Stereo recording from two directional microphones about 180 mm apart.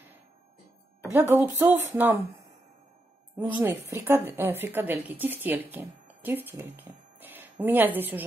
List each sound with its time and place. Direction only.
1.1 s a woman's voice: 10° right (ahead or behind)
3.3 s a woman's voice: 10° right (ahead or behind)